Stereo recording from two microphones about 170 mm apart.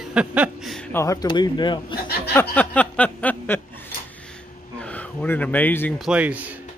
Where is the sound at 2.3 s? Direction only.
10° left (ahead or behind).